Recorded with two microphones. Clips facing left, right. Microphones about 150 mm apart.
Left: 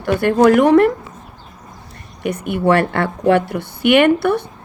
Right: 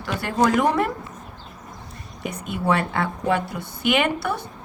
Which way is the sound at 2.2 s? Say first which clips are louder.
Left 7 dB; 65° left (ahead or behind).